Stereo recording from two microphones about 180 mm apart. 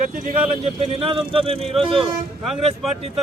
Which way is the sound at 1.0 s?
30° right (ahead or behind).